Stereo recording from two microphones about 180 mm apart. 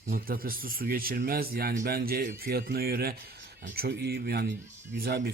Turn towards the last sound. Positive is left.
turn(degrees=-60)  # may be behind; listen again after turning